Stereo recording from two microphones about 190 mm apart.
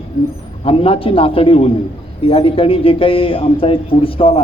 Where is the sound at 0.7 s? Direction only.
30° left (ahead or behind).